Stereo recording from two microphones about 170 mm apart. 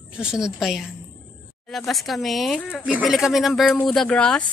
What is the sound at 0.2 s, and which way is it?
Speech, 5° right (ahead or behind).